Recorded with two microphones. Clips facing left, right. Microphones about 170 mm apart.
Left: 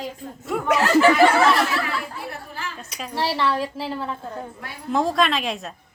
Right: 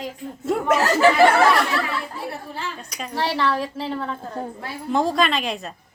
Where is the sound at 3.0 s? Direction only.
Centre (ahead or behind).